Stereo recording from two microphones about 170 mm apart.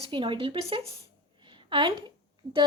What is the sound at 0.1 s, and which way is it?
Speech, 30° right (ahead or behind).